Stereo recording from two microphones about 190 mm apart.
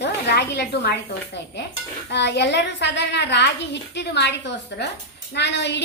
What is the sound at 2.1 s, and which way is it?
A woman's voice, 65° left (ahead or behind).